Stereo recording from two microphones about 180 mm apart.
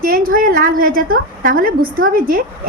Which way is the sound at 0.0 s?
50° right (ahead or behind).